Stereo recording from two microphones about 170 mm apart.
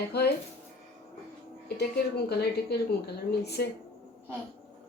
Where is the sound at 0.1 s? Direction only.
75° left (ahead or behind).